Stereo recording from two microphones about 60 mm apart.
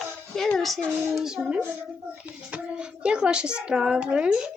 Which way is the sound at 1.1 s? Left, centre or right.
Centre.